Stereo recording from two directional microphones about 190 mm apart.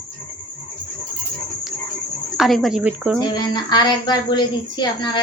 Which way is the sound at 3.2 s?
20° left (ahead or behind).